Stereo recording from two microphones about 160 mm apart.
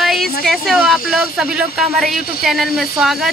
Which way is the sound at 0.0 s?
Centre (ahead or behind).